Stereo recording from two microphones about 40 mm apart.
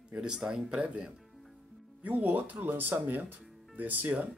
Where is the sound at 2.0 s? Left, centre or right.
Right.